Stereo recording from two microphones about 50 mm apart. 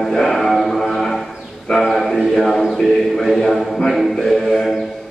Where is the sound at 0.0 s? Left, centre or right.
Centre.